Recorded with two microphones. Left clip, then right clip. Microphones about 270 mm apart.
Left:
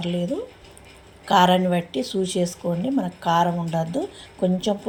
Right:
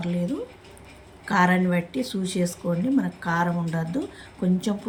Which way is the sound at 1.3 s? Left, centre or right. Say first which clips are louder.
Left 5 dB; centre.